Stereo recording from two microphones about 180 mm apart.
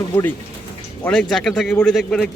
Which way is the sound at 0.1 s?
10° left (ahead or behind).